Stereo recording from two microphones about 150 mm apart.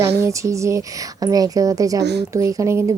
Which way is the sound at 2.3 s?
20° right (ahead or behind).